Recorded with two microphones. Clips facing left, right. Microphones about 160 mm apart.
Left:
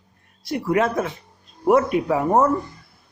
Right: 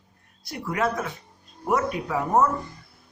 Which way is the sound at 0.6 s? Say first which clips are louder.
Left 5 dB; 25° left (ahead or behind).